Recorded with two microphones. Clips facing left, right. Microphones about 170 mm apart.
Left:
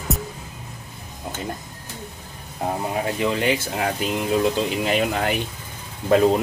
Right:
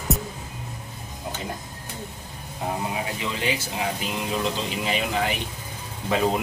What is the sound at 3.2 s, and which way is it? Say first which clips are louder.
Speech: left 6 dB; 55° left (ahead or behind).